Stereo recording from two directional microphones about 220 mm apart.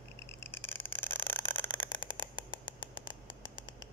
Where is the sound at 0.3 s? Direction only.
10° left (ahead or behind).